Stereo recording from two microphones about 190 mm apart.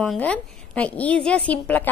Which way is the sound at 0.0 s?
5° left (ahead or behind).